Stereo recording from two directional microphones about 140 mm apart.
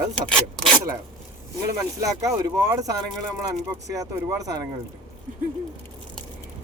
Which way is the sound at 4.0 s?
25° right (ahead or behind).